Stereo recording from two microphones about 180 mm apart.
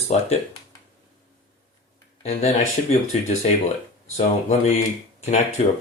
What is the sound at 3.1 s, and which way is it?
Speech, 35° left (ahead or behind).